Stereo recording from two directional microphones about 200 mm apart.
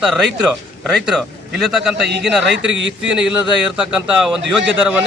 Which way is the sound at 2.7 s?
65° right (ahead or behind).